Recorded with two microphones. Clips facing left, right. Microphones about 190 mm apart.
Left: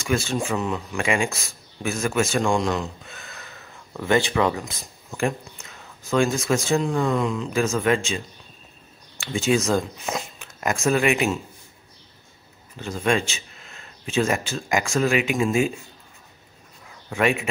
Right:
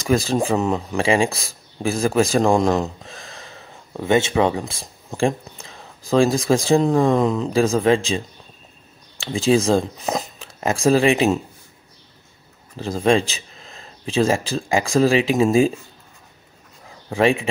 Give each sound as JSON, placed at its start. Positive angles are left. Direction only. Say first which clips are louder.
{"t": 0.0, "sound": "speech", "louder": "right 5 dB", "side_deg": -35}
{"t": 9.2, "sound": "speech", "louder": "right 4 dB", "side_deg": -35}
{"t": 12.7, "sound": "speech", "louder": "right 5 dB", "side_deg": -35}
{"t": 17.1, "sound": "speech", "louder": "right 4 dB", "side_deg": -30}